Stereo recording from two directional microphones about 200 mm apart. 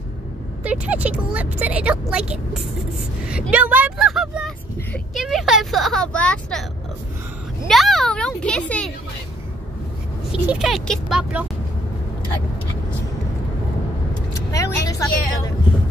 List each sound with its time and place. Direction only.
0.7 s speech: 5° right (ahead or behind)
7.6 s speech: centre (ahead or behind)
10.3 s speech: 5° right (ahead or behind)
14.5 s a woman's voice: 15° left (ahead or behind)